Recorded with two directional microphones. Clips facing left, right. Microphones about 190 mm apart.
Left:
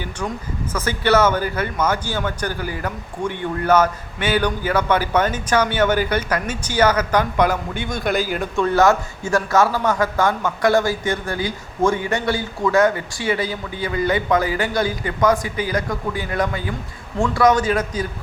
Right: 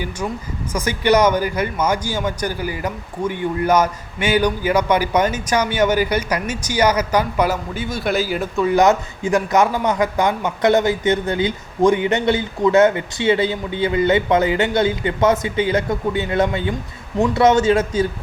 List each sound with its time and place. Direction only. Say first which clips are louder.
0.7 s a man's voice: right 2 dB; 15° right (ahead or behind)
8.7 s a man's voice: right 2 dB; 15° right (ahead or behind)